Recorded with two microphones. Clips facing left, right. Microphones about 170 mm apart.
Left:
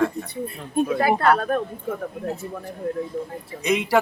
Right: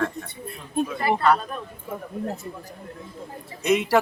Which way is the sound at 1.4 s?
60° left (ahead or behind).